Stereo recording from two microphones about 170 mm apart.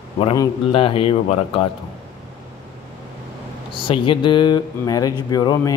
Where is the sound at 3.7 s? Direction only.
30° left (ahead or behind).